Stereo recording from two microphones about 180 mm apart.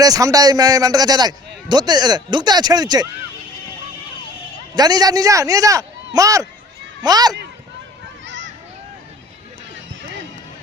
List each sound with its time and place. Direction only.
0.0 s a man's voice: 20° right (ahead or behind)
4.7 s a man's voice: 20° right (ahead or behind)
8.2 s a sound: 90° right